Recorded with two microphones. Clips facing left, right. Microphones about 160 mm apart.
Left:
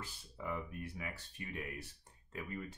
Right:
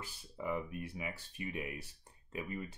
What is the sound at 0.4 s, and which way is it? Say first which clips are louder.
Speech: right 4 dB; 15° right (ahead or behind).